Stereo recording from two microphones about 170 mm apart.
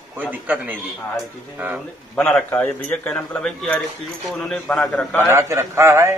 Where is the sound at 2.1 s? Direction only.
5° left (ahead or behind).